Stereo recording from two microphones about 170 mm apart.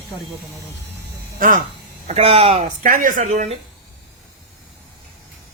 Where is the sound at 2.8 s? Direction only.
55° right (ahead or behind).